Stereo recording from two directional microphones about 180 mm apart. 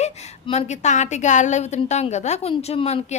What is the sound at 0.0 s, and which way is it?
A woman's voice, 35° left (ahead or behind).